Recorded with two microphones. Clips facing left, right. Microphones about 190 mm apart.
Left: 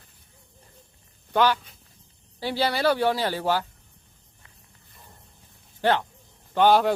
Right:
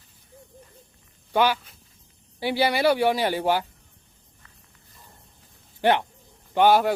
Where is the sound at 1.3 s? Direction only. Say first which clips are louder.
Even; 10° right (ahead or behind).